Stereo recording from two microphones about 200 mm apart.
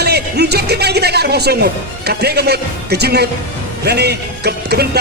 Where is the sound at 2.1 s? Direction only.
55° right (ahead or behind).